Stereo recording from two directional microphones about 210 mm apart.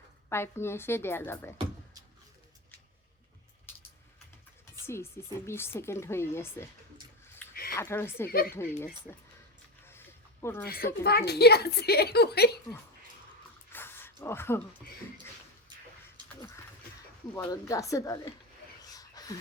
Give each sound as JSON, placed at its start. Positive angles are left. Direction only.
{"t": 0.3, "sound": "speech", "side_deg": 10}
{"t": 4.9, "sound": "speech", "side_deg": 10}
{"t": 7.5, "sound": "a sound", "side_deg": 45}
{"t": 7.8, "sound": "speech", "side_deg": 10}
{"t": 8.3, "sound": "speech", "side_deg": 45}
{"t": 8.5, "sound": "speech", "side_deg": 10}
{"t": 10.4, "sound": "speech", "side_deg": 10}
{"t": 11.0, "sound": "speech", "side_deg": 50}
{"t": 13.7, "sound": "a sound", "side_deg": 10}
{"t": 17.3, "sound": "speech", "side_deg": 15}
{"t": 18.8, "sound": "a sound", "side_deg": 15}